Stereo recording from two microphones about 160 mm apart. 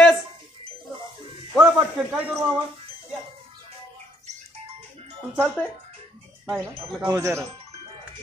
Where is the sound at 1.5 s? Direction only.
Centre (ahead or behind).